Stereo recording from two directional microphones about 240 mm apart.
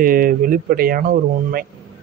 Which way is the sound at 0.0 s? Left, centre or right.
Right.